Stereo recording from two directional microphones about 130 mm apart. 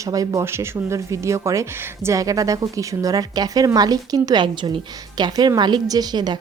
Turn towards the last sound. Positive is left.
turn(degrees=-30)  # may be behind; listen again after turning